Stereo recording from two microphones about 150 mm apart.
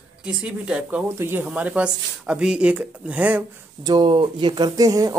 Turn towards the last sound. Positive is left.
turn(degrees=-25)  # may be behind; listen again after turning